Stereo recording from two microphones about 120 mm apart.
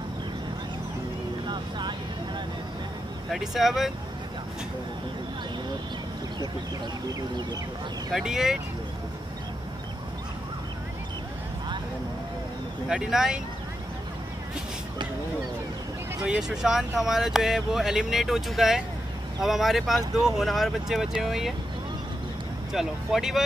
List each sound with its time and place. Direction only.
1.5 s vehicle: 40° right (ahead or behind)
3.3 s speech: centre (ahead or behind)
8.1 s speech: 5° right (ahead or behind)
12.8 s speech: 5° right (ahead or behind)
16.2 s speech: 5° right (ahead or behind)
22.7 s speech: 5° right (ahead or behind)